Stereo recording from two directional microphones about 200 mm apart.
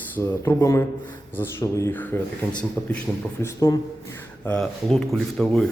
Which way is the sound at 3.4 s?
15° left (ahead or behind).